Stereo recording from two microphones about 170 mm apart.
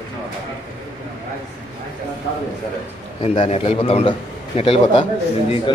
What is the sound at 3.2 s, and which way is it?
A man's voice, 35° left (ahead or behind).